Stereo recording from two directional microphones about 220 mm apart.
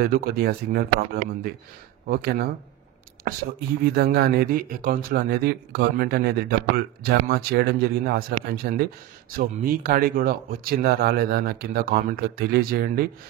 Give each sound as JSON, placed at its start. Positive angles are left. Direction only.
{"t": 0.0, "sound": "speech", "side_deg": -45}